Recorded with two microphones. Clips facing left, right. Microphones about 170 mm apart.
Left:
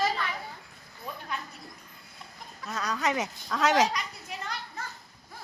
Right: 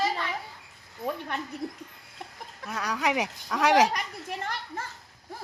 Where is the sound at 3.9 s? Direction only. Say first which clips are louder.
Right 3 dB; 50° right (ahead or behind).